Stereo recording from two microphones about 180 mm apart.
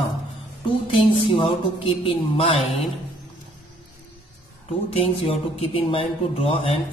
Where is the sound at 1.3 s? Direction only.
30° left (ahead or behind).